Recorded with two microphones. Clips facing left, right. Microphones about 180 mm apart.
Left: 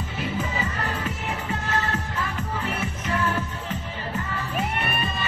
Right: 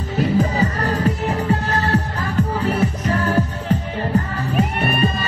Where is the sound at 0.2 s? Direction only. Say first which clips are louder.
Right 11 dB; 40° right (ahead or behind).